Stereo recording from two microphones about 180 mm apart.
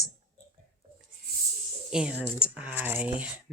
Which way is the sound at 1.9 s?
5° right (ahead or behind).